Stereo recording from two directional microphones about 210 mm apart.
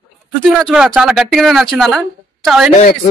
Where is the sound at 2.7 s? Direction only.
30° left (ahead or behind).